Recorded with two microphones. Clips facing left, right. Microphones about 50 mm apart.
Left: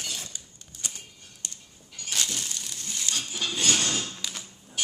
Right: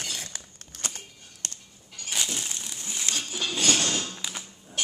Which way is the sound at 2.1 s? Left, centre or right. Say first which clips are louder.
Even; centre.